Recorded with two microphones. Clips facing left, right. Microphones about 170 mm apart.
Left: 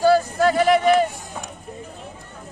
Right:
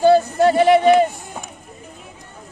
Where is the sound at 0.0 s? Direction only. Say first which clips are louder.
Right 3 dB; 20° right (ahead or behind).